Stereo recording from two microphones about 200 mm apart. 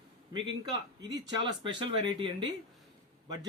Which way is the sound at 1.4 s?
25° right (ahead or behind).